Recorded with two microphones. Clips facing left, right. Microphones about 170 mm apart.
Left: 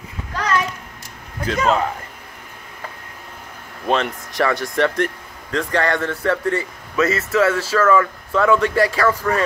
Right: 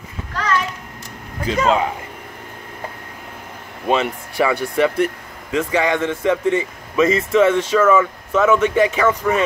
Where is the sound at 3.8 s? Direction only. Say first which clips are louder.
Right 1 dB; 5° right (ahead or behind).